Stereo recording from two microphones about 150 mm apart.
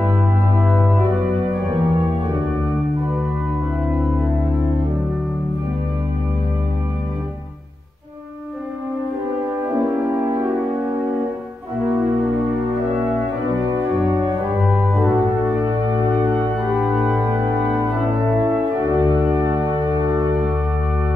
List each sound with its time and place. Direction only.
9.8 s french horn: 10° right (ahead or behind)
14.1 s music: 15° right (ahead or behind)
16.3 s organ: 10° right (ahead or behind)
17.2 s music: 20° right (ahead or behind)
18.9 s organ: 5° right (ahead or behind)